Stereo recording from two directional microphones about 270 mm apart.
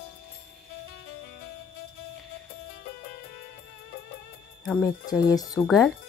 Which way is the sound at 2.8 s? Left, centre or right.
Left.